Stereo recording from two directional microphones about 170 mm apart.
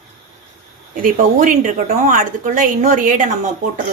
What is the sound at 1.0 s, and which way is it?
A woman's voice, 50° right (ahead or behind).